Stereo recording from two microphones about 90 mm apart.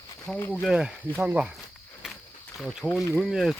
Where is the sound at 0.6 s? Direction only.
5° right (ahead or behind).